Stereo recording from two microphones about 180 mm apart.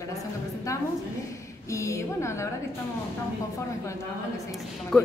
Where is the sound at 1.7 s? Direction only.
15° left (ahead or behind).